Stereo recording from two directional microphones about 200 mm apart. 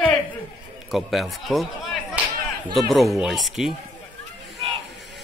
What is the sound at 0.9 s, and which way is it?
Speech, centre (ahead or behind).